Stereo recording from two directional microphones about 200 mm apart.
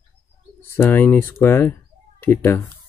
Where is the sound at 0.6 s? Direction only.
10° left (ahead or behind).